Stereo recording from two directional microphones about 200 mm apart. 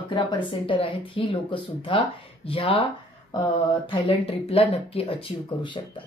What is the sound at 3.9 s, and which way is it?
Speech, 25° left (ahead or behind).